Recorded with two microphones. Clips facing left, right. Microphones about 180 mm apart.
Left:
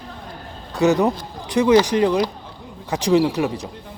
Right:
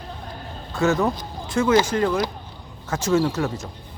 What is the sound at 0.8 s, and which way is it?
Speech, 15° left (ahead or behind).